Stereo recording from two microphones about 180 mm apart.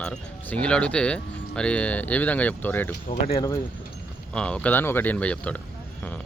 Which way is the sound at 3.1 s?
30° left (ahead or behind).